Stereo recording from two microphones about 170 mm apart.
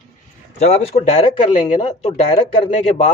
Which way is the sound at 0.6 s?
40° left (ahead or behind).